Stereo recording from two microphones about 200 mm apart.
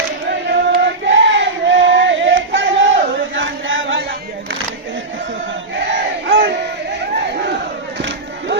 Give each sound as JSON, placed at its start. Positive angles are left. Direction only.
{"t": 0.3, "sound": "a sound", "side_deg": -60}
{"t": 3.3, "sound": "chant", "side_deg": -70}
{"t": 6.2, "sound": "battle cry", "side_deg": -65}